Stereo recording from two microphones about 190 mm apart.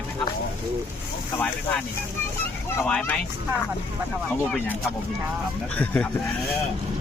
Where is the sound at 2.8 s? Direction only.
5° left (ahead or behind).